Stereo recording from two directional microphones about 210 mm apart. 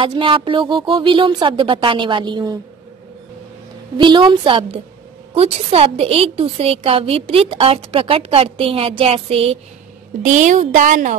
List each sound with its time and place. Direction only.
0.0 s a woman's voice: 25° right (ahead or behind)
4.0 s a woman's voice: 20° right (ahead or behind); by 11.1 s 40° right (ahead or behind)